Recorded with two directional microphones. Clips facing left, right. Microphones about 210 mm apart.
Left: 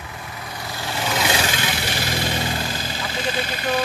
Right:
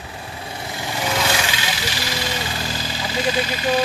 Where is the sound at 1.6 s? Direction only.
55° left (ahead or behind).